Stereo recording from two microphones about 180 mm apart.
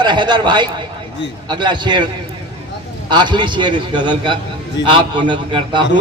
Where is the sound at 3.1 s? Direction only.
25° right (ahead or behind).